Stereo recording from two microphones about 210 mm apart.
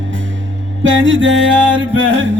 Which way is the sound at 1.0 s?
65° right (ahead or behind).